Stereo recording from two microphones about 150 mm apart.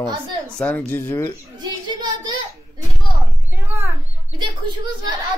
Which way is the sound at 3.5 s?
15° right (ahead or behind).